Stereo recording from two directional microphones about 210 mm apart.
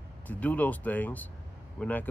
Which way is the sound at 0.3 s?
5° left (ahead or behind).